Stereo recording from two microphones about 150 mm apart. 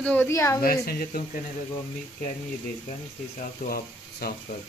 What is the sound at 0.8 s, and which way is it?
Speech, 85° left.